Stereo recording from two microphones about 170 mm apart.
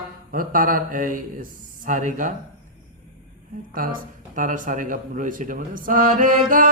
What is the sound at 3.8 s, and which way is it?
A man's voice, 55° right (ahead or behind).